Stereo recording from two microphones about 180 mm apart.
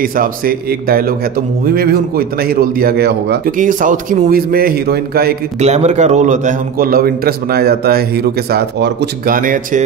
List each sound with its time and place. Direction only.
0.0 s a man's voice: 50° right (ahead or behind)
5.6 s a man's voice: 40° right (ahead or behind)